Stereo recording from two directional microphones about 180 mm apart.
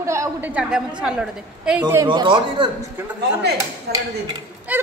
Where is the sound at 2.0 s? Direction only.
25° right (ahead or behind).